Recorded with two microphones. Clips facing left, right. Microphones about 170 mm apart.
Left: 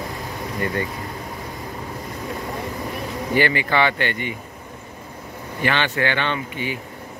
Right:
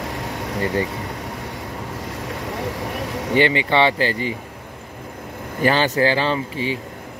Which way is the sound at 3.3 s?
25° right (ahead or behind).